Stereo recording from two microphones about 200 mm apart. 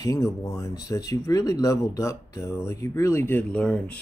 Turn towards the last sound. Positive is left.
turn(degrees=5)  # may be behind; listen again after turning